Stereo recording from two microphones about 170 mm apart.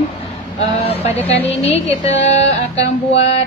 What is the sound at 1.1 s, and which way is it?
Speech, 10° left (ahead or behind).